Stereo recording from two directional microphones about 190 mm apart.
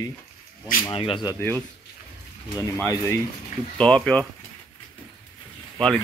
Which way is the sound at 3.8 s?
5° left (ahead or behind).